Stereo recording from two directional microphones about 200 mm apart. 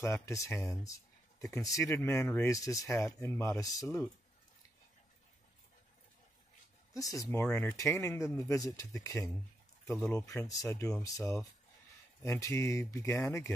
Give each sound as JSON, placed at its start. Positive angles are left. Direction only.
{"t": 0.0, "sound": "speech", "side_deg": 15}
{"t": 6.9, "sound": "speech", "side_deg": 15}